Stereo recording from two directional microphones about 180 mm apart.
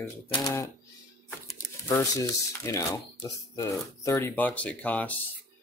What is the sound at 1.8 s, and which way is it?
Speech, 20° left (ahead or behind).